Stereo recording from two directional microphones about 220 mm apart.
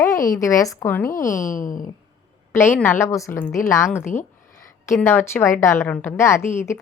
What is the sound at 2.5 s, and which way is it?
A woman's voice, 10° left (ahead or behind).